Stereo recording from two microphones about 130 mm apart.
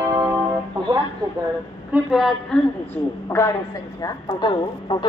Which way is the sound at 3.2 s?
20° left (ahead or behind).